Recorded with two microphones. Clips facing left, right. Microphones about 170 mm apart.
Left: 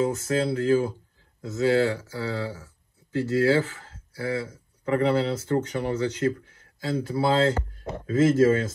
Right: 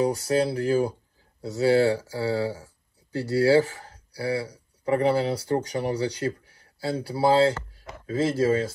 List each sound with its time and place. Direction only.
0.0 s speech: 35° right (ahead or behind)